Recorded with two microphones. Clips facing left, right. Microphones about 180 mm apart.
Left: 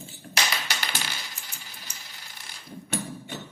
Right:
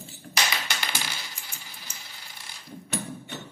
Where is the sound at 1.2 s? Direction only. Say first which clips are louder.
Even; 10° left (ahead or behind).